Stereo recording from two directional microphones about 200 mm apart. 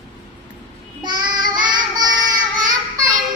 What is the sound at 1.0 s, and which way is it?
Child singing, 20° right (ahead or behind).